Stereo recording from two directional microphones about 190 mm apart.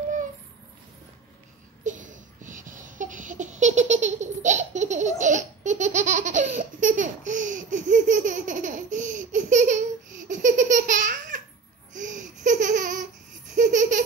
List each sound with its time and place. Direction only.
1.9 s a sound: 40° right (ahead or behind)
5.2 s laughter: 40° right (ahead or behind)
13.6 s baby laughter: 40° right (ahead or behind)